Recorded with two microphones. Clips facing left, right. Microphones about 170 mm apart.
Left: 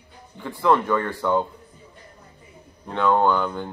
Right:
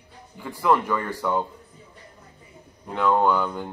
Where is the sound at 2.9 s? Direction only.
5° right (ahead or behind).